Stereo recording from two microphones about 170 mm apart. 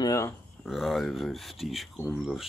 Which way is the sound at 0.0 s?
20° left (ahead or behind).